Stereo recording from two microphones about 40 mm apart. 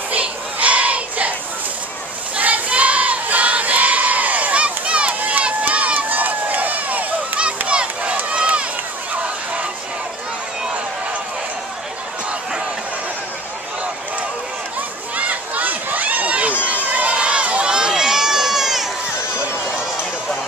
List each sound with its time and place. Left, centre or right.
0.1 s child singing: right
2.3 s choir: right
5.7 s crowd: right
7.3 s a sound: right
8.3 s run: right
15.1 s run: right; by 18.9 s centre